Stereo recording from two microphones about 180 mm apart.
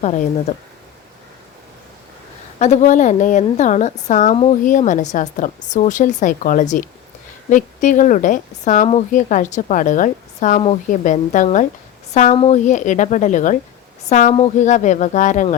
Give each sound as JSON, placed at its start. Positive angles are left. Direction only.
{"t": 0.0, "sound": "speech", "side_deg": 40}
{"t": 2.6, "sound": "speech", "side_deg": 40}